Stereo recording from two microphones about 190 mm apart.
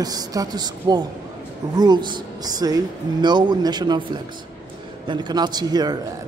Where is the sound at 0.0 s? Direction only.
20° right (ahead or behind).